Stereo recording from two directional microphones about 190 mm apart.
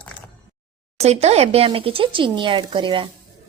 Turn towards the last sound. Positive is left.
turn(degrees=-25)  # may be behind; listen again after turning